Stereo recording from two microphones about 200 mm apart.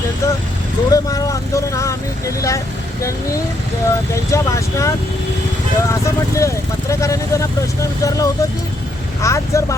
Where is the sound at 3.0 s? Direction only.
15° left (ahead or behind).